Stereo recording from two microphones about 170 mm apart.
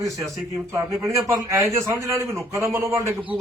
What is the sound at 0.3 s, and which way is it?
A man's voice, 20° right (ahead or behind).